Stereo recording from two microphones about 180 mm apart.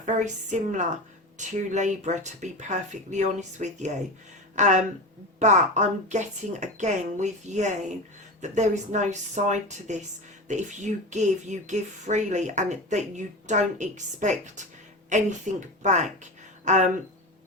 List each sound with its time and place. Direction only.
0.0 s a woman's voice: 45° right (ahead or behind)